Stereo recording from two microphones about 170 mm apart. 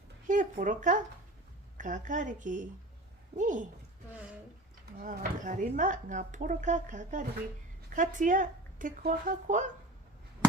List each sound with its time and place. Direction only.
0.3 s speech: 50° right (ahead or behind)
4.9 s speech: 50° right (ahead or behind)